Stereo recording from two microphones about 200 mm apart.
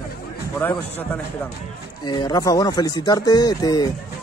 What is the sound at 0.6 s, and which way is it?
Speech, 10° left (ahead or behind).